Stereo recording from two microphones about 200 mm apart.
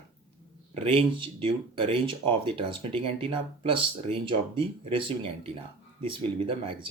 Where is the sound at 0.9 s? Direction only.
25° right (ahead or behind).